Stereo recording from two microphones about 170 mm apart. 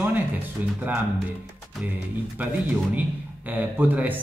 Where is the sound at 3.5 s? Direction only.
10° right (ahead or behind).